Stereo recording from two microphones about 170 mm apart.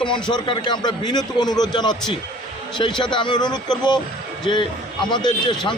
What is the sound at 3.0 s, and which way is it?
Speech, 25° left (ahead or behind).